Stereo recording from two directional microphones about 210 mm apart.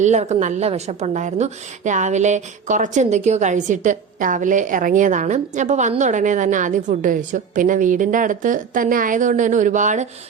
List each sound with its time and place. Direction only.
0.0 s a woman's voice: 35° right (ahead or behind)